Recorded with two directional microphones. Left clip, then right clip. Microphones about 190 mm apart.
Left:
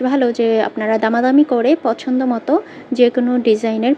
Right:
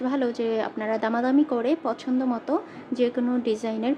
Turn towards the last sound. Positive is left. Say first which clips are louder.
# left 11 dB
turn(degrees=20)  # may be behind; listen again after turning